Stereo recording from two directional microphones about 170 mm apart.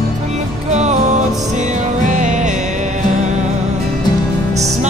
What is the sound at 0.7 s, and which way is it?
Music, 40° right (ahead or behind).